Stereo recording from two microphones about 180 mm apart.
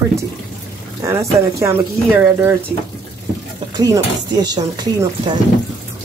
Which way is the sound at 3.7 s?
20° right (ahead or behind).